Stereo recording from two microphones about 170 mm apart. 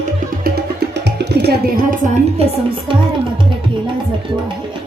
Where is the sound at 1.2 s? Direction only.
75° right (ahead or behind); by 2.4 s 45° right (ahead or behind).